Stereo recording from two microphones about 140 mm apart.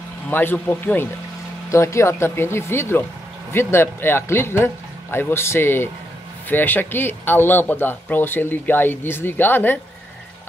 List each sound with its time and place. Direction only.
0.3 s speech: 15° left (ahead or behind)